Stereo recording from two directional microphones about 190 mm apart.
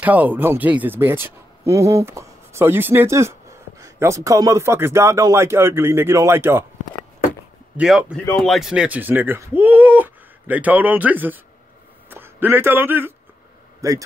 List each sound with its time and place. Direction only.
0.0 s speech: 10° right (ahead or behind)
7.7 s a man's voice: 5° right (ahead or behind)